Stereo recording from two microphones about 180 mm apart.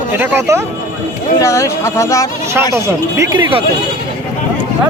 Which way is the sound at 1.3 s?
15° left (ahead or behind).